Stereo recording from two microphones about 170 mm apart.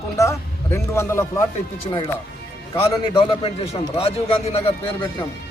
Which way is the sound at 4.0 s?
35° left (ahead or behind).